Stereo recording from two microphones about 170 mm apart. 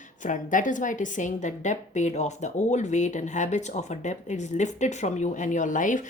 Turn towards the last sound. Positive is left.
turn(degrees=50)  # may be behind; listen again after turning